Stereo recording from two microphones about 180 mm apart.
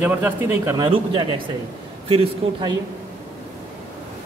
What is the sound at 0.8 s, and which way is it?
Speech, 30° right (ahead or behind).